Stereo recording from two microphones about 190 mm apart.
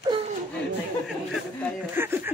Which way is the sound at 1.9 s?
10° right (ahead or behind).